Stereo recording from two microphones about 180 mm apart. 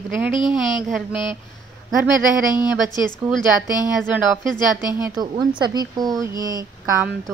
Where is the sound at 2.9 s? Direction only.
25° left (ahead or behind).